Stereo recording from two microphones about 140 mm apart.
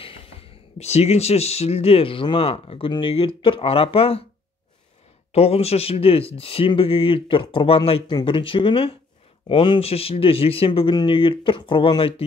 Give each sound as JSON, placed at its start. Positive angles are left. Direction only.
{"t": 0.0, "sound": "speech", "side_deg": 45}
{"t": 5.3, "sound": "speech", "side_deg": 45}